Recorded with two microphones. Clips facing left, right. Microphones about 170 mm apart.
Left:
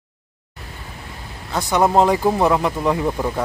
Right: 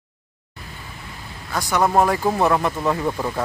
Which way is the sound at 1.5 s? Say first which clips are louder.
Left 2 dB; 20° left (ahead or behind).